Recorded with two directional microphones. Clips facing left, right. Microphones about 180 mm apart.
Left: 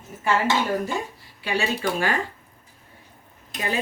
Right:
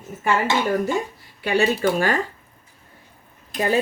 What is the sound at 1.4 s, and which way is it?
Speech, 45° right (ahead or behind).